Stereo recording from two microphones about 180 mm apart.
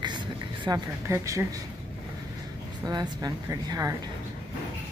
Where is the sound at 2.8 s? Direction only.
20° right (ahead or behind).